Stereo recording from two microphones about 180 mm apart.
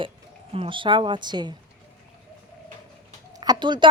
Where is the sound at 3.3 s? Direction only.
25° right (ahead or behind).